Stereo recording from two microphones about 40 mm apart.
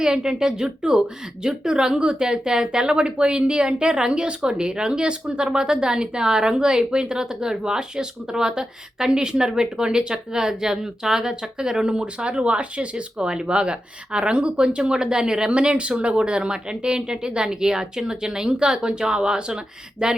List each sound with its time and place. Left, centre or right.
0.0 s speech: centre